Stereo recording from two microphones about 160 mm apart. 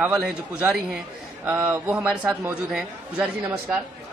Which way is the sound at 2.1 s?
5° right (ahead or behind).